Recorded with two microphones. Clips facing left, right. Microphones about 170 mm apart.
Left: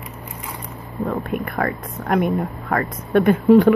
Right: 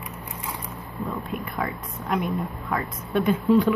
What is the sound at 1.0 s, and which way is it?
Speech, 60° left (ahead or behind).